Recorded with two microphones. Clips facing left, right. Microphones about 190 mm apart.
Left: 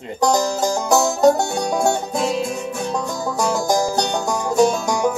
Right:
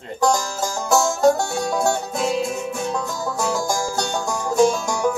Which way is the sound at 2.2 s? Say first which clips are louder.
Left 1 dB; centre (ahead or behind).